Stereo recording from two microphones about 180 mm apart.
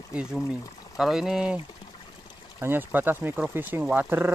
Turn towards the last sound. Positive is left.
turn(degrees=-10)  # may be behind; listen again after turning